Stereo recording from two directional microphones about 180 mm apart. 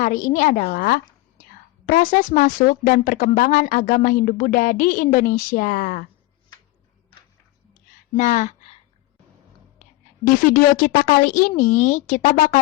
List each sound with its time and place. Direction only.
0.0 s a woman's voice: 45° left (ahead or behind)
8.1 s speech: 45° left (ahead or behind)
10.2 s a woman's voice: 50° left (ahead or behind)